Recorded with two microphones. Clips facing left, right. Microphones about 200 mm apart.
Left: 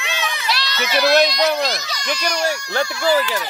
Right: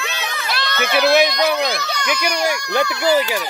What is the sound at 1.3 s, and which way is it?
Speech, 55° right (ahead or behind).